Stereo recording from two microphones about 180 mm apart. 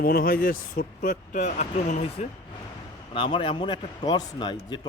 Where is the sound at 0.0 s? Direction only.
55° left (ahead or behind).